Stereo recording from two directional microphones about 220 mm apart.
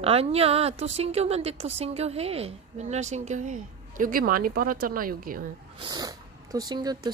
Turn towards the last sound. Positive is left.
turn(degrees=-20)  # may be behind; listen again after turning